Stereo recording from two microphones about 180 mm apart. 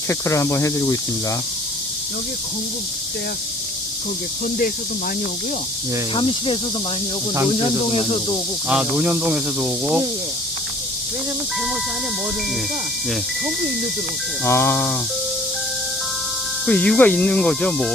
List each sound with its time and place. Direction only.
0.1 s speech: 15° left (ahead or behind)
6.1 s insect: 30° left (ahead or behind)
7.9 s speech: 30° left (ahead or behind)
8.7 s speech: 10° right (ahead or behind)
14.4 s speech: 10° left (ahead or behind)
16.6 s speech: 5° left (ahead or behind)